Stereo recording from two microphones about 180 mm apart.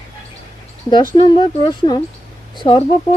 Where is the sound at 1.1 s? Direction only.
25° left (ahead or behind).